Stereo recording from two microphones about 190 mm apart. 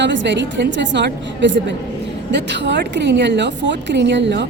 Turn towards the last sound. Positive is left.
turn(degrees=-65)  # may be behind; listen again after turning